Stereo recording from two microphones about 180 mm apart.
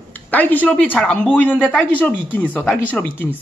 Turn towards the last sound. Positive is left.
turn(degrees=10)  # may be behind; listen again after turning